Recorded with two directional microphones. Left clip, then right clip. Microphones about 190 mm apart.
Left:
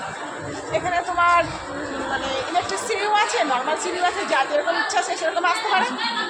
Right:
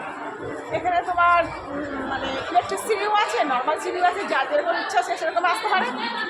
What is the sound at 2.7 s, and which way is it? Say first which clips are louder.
A woman's voice: left 1 dB; 10° right (ahead or behind).